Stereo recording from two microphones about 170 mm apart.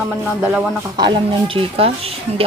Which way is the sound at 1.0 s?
30° right (ahead or behind).